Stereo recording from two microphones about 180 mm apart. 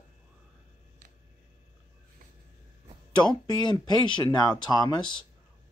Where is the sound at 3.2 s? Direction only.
25° left (ahead or behind).